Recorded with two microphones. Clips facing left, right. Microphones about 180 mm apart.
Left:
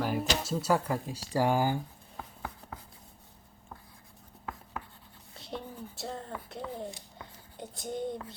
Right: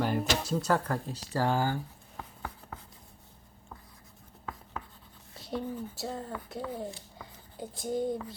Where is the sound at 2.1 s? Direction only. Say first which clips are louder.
Even; 5° left (ahead or behind).